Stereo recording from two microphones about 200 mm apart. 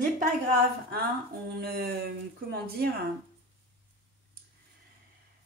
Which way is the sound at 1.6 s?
50° right (ahead or behind).